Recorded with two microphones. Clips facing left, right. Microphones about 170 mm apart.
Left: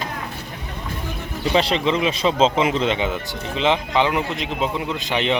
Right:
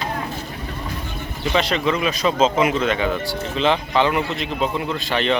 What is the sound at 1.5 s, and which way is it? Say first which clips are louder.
A man's voice: left 1 dB; 30° left (ahead or behind).